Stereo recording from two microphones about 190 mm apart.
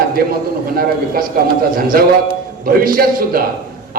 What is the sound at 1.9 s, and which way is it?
A man's voice, 50° right (ahead or behind).